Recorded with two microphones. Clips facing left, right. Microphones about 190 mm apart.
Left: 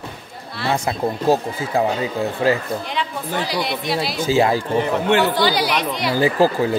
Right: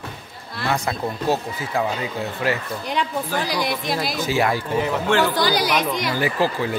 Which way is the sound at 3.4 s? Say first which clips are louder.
Left 1 dB; 45° right (ahead or behind).